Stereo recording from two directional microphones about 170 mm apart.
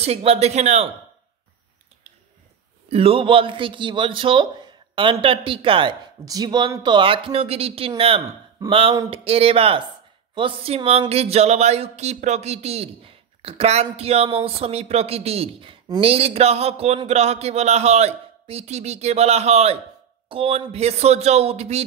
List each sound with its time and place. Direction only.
0.0 s speech: 35° right (ahead or behind)
2.9 s speech: 35° right (ahead or behind)